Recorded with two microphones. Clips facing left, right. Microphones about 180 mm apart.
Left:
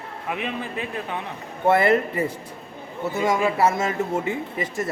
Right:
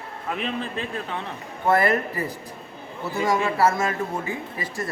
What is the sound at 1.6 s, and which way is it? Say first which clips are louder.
Speech: left 2 dB; 25° left (ahead or behind).